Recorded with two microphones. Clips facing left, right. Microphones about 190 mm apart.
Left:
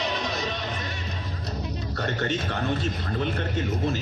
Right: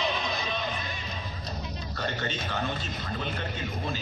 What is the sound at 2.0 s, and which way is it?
A man's voice, 60° left (ahead or behind).